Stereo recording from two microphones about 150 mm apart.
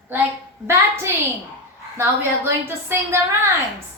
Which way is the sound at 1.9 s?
15° right (ahead or behind).